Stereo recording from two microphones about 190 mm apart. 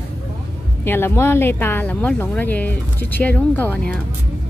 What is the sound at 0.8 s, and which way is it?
Speech, 10° left (ahead or behind).